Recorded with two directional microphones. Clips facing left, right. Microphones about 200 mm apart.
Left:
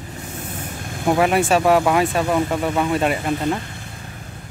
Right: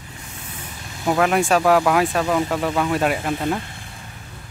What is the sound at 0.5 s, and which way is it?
Vehicle, 55° left (ahead or behind).